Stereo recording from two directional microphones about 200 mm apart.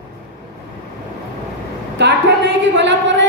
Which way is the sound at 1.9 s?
60° right (ahead or behind).